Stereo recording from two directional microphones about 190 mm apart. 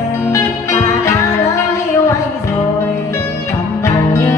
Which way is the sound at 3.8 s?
15° left (ahead or behind).